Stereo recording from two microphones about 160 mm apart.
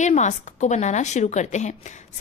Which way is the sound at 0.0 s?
50° left (ahead or behind).